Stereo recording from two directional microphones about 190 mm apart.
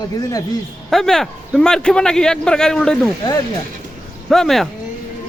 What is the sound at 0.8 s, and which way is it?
A man's voice, centre (ahead or behind).